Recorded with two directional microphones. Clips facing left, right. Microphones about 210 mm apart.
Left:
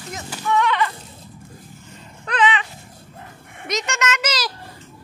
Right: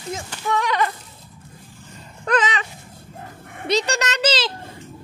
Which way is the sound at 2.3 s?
40° right (ahead or behind).